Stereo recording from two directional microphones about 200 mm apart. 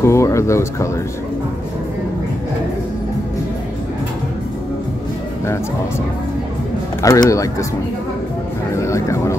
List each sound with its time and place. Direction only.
0.0 s speech: 15° left (ahead or behind)
7.0 s speech: 15° left (ahead or behind)
8.7 s speech: 15° left (ahead or behind)